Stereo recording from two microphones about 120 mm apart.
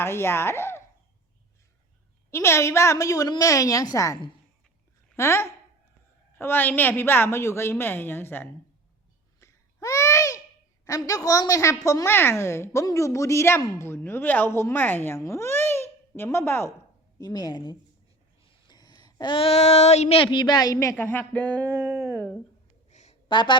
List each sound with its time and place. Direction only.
0.0 s speech: 20° left (ahead or behind)
2.3 s a woman's voice: 20° left (ahead or behind)
9.4 s babbling: 25° left (ahead or behind)
10.8 s a woman's voice: 30° left (ahead or behind)
17.2 s a woman's voice: 30° left (ahead or behind)
20.9 s a woman's voice: 15° left (ahead or behind)
21.7 s a sound: 20° right (ahead or behind)
22.9 s a sound: 75° left (ahead or behind)
23.3 s a woman's voice: 40° left (ahead or behind)